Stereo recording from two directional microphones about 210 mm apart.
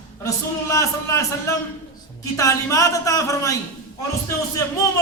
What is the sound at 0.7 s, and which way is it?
A man's voice, 15° left (ahead or behind).